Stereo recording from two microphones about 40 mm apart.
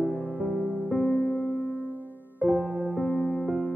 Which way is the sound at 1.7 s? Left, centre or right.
Right.